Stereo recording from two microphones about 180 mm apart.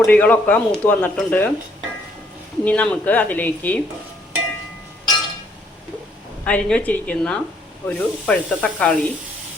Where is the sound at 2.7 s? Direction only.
5° left (ahead or behind).